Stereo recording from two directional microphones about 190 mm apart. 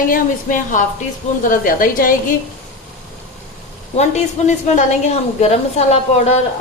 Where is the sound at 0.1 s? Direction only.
45° left (ahead or behind).